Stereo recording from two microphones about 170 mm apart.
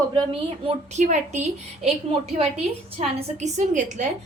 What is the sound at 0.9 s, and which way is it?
Speech, 45° right (ahead or behind).